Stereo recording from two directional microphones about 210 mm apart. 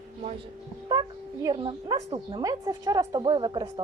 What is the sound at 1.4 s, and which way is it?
A woman's voice, 20° right (ahead or behind).